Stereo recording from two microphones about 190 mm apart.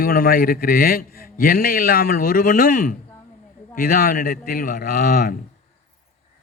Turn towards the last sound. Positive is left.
turn(degrees=50)  # may be behind; listen again after turning